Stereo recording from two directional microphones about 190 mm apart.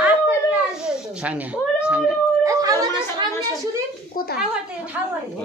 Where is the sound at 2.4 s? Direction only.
15° right (ahead or behind).